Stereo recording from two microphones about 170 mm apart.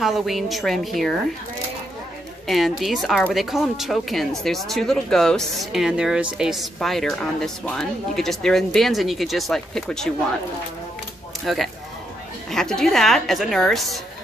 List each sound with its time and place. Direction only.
0.0 s speech: centre (ahead or behind)
2.4 s speech: centre (ahead or behind)
11.4 s speech: centre (ahead or behind)